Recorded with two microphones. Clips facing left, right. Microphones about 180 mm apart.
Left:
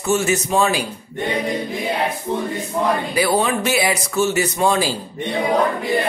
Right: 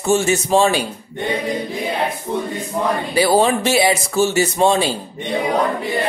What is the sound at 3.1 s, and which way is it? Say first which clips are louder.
Speech: right 3 dB; 30° right (ahead or behind).